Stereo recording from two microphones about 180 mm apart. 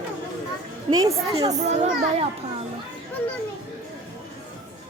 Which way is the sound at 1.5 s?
40° right (ahead or behind).